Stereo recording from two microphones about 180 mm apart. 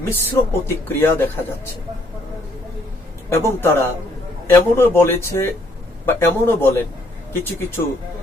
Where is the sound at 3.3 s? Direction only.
15° left (ahead or behind).